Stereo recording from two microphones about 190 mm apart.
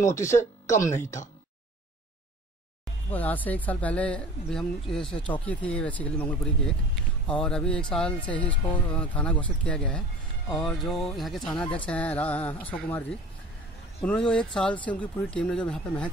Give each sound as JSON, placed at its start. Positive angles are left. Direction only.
{"t": 0.0, "sound": "speech", "side_deg": 15}
{"t": 3.1, "sound": "speech", "side_deg": 10}
{"t": 14.3, "sound": "speech", "side_deg": 5}